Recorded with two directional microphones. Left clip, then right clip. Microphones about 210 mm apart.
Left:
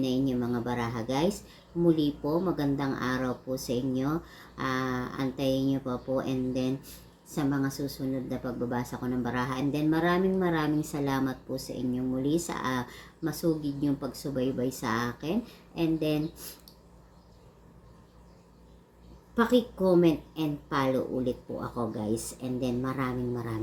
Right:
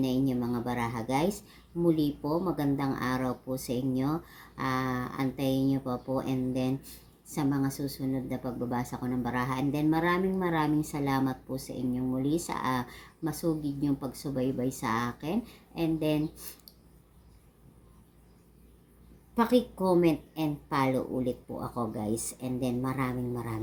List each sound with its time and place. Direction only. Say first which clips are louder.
0.0 s speech: left 1 dB; 15° right (ahead or behind)
19.4 s speech: left 1 dB; 15° right (ahead or behind)